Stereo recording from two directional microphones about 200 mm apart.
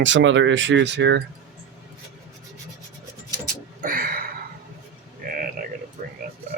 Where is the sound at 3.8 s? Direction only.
45° right (ahead or behind).